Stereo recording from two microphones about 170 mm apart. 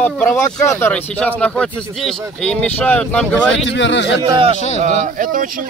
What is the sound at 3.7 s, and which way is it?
Speech, 90° left.